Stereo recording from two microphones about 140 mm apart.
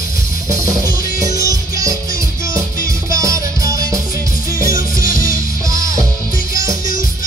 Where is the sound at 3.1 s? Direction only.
25° right (ahead or behind).